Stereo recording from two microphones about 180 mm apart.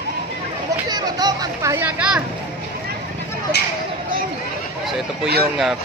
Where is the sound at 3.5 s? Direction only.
65° left (ahead or behind).